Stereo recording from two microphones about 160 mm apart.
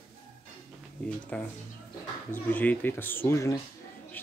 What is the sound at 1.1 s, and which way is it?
Speech, 5° left (ahead or behind).